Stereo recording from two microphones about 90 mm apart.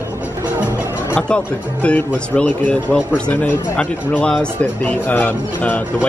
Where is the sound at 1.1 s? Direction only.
15° left (ahead or behind).